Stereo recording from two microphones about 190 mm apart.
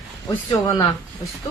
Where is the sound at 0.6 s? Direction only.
25° left (ahead or behind).